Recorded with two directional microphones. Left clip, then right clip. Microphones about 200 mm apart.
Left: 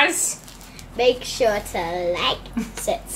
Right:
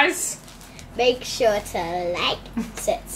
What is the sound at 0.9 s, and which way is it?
A woman's voice, centre (ahead or behind).